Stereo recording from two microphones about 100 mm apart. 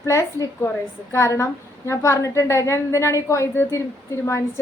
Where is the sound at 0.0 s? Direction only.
30° left (ahead or behind).